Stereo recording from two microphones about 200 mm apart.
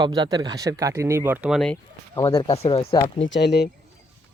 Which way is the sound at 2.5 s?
30° left (ahead or behind).